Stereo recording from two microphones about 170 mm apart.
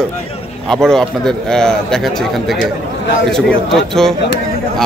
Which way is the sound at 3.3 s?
5° left (ahead or behind).